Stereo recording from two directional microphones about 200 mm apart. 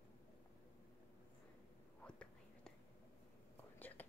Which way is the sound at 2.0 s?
5° left (ahead or behind).